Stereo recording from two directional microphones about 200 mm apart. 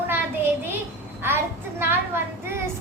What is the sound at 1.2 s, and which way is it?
A child's voice, 10° right (ahead or behind).